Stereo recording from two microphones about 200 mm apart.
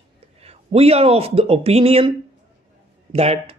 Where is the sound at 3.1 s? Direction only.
30° right (ahead or behind).